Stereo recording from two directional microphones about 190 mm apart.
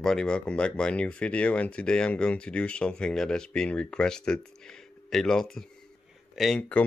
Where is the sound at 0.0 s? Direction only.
5° left (ahead or behind).